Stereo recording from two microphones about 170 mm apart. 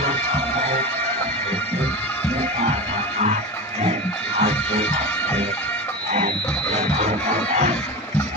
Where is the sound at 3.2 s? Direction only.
40° right (ahead or behind).